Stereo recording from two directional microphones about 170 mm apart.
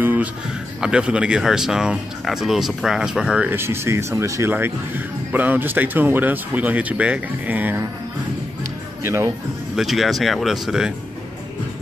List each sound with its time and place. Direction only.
0.0 s speech: 10° right (ahead or behind)
9.0 s speech: 15° right (ahead or behind)
9.8 s speech: centre (ahead or behind)